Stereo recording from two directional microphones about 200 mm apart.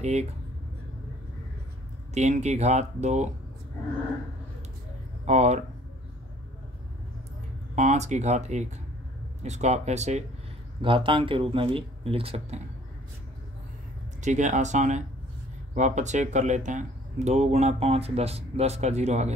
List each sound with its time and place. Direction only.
0.0 s speech: 35° right (ahead or behind)
2.1 s speech: 35° right (ahead or behind)
5.2 s speech: 35° right (ahead or behind)
7.7 s speech: 35° right (ahead or behind)
14.2 s speech: 35° right (ahead or behind)